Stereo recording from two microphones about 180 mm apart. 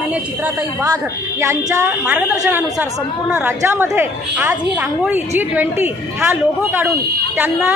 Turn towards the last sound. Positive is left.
turn(degrees=-10)  # may be behind; listen again after turning